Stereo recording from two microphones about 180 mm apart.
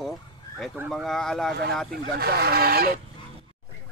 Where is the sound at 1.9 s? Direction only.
60° right (ahead or behind).